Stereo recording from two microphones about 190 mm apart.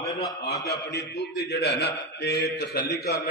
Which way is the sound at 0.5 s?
60° left (ahead or behind).